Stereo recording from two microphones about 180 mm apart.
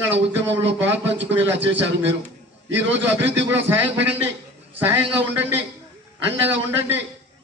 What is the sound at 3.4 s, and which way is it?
Speech, 85° right.